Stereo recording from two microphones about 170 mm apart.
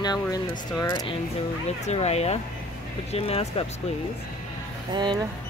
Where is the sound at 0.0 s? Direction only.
25° left (ahead or behind).